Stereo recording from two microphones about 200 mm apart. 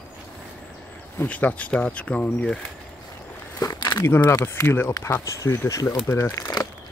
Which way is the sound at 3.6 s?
20° left (ahead or behind).